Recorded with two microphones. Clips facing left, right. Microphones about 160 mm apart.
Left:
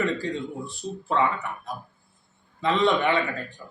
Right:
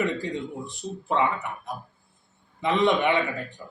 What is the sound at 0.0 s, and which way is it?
A man's voice, 20° right (ahead or behind).